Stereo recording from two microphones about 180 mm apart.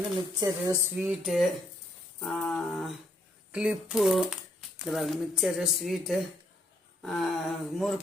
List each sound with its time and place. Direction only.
0.3 s speech: 20° right (ahead or behind)
1.2 s speech: centre (ahead or behind)